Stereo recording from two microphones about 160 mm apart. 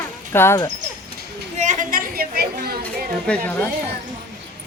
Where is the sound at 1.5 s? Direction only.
50° right (ahead or behind); by 3.1 s 75° right (ahead or behind).